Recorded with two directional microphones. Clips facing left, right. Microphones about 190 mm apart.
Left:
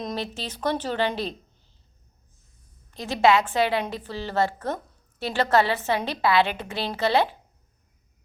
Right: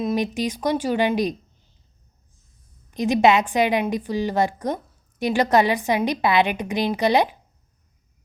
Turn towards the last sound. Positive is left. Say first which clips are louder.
# right 3 dB
turn(degrees=-15)  # may be behind; listen again after turning